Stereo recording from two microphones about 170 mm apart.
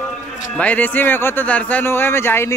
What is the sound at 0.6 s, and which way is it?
A man's voice, 10° left (ahead or behind).